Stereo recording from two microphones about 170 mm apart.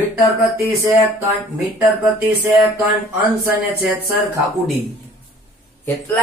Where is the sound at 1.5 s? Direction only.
15° right (ahead or behind).